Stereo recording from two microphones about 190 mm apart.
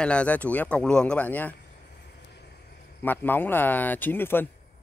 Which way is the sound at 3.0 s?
10° left (ahead or behind).